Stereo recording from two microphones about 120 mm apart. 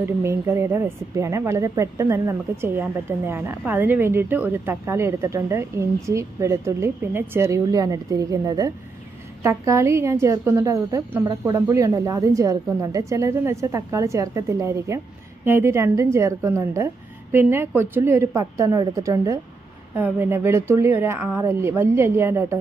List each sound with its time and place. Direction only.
0.0 s speech: 20° right (ahead or behind)
20.0 s speech: 20° right (ahead or behind)